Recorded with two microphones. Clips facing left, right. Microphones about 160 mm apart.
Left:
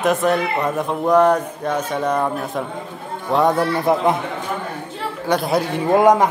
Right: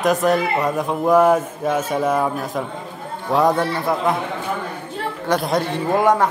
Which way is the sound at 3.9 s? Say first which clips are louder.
Left 6 dB; 20° left (ahead or behind).